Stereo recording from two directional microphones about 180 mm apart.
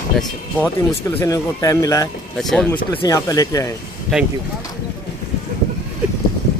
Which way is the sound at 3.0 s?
20° left (ahead or behind).